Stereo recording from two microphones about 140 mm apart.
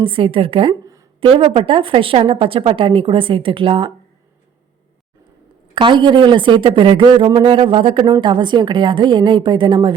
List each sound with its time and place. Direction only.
0.0 s a woman's voice: 40° right (ahead or behind)
5.7 s a woman's voice: 35° right (ahead or behind)